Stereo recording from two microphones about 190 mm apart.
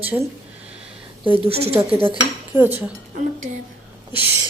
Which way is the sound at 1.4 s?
30° right (ahead or behind).